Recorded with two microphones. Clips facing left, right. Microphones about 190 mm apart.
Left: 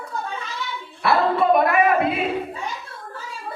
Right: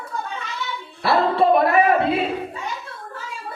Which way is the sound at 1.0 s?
30° right (ahead or behind).